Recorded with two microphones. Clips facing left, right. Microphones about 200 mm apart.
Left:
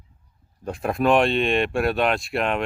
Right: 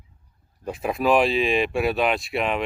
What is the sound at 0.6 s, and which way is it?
Speech, centre (ahead or behind).